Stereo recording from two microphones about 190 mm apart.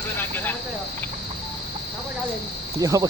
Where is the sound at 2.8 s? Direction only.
20° right (ahead or behind).